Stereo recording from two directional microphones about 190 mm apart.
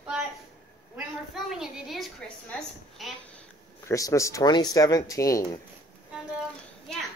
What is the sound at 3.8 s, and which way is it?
Speech, 15° left (ahead or behind).